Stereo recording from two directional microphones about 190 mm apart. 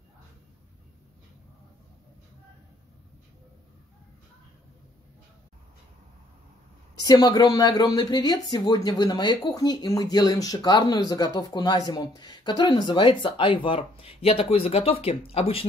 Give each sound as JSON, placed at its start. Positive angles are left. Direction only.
{"t": 7.0, "sound": "speech", "side_deg": 20}